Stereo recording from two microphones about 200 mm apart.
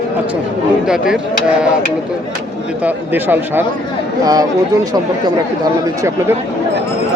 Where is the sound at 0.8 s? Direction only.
5° right (ahead or behind).